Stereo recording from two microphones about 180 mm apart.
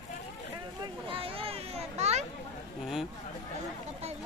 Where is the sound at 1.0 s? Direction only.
30° right (ahead or behind).